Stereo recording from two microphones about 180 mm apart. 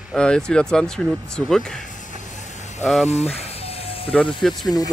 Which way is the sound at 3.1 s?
35° left (ahead or behind).